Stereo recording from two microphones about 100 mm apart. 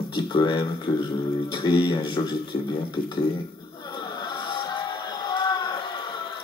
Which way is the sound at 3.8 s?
50° left (ahead or behind).